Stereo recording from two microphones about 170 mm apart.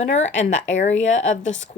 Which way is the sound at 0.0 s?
45° left (ahead or behind).